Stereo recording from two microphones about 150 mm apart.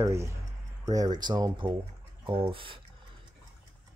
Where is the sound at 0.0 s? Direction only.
20° right (ahead or behind); by 2.8 s 35° right (ahead or behind).